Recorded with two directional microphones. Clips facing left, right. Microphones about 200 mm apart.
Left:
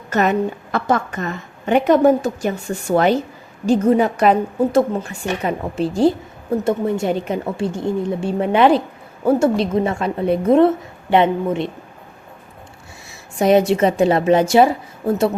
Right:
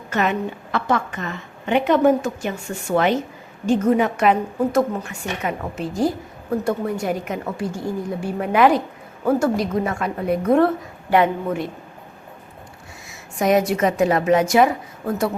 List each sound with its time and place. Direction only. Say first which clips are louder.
0.1 s a woman's voice: left 4 dB; 40° left (ahead or behind); by 11.7 s 25° left (ahead or behind)
13.1 s a woman's voice: left 4 dB; 30° left (ahead or behind)